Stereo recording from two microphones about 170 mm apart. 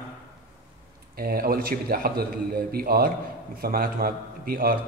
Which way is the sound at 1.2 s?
60° right (ahead or behind).